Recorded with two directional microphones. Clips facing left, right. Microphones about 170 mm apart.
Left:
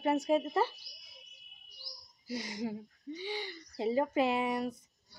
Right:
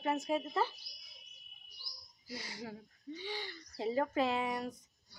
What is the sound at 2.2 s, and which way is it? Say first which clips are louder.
Speech: left 8 dB; 20° left (ahead or behind).